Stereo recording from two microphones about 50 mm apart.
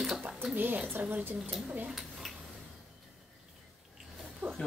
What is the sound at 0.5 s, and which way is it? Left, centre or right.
Speech, right.